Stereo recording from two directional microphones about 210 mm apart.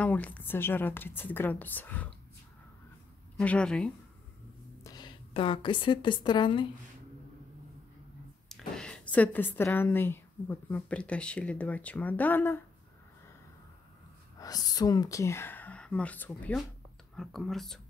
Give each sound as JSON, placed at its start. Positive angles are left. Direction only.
{"t": 0.0, "sound": "speech", "side_deg": 5}
{"t": 3.3, "sound": "speech", "side_deg": 5}
{"t": 4.8, "sound": "a woman's voice", "side_deg": 20}
{"t": 8.5, "sound": "a woman's voice", "side_deg": 0}
{"t": 14.4, "sound": "speech", "side_deg": 20}